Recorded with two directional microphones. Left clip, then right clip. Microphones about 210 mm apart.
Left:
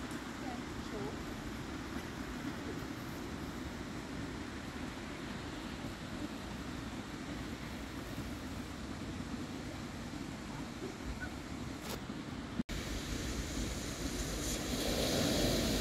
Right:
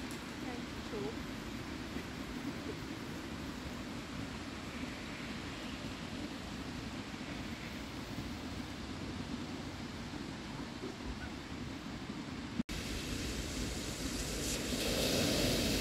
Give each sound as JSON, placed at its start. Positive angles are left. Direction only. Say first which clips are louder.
{"t": 14.4, "sound": "vehicle", "louder": "right 1 dB", "side_deg": -5}